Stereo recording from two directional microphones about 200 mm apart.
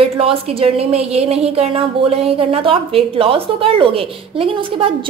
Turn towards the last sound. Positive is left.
turn(degrees=-25)  # may be behind; listen again after turning